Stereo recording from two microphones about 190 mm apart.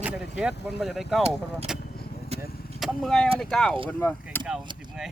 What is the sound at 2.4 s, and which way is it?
Vehicle, 55° left (ahead or behind).